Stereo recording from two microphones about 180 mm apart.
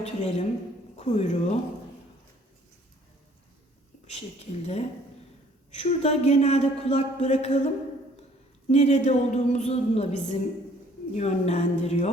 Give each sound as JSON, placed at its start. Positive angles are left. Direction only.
{"t": 0.0, "sound": "speech", "side_deg": 40}
{"t": 4.0, "sound": "speech", "side_deg": 35}
{"t": 8.7, "sound": "speech", "side_deg": 40}